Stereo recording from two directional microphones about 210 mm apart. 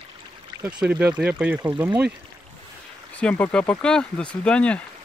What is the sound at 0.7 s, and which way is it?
Speech, 5° right (ahead or behind).